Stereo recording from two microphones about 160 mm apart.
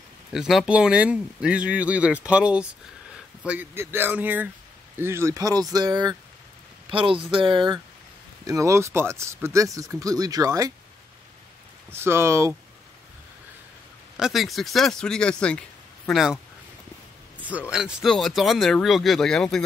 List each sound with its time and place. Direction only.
0.3 s speech: centre (ahead or behind); by 10.7 s 20° right (ahead or behind)
11.9 s speech: 15° right (ahead or behind)
14.1 s speech: centre (ahead or behind)
17.4 s speech: 10° right (ahead or behind)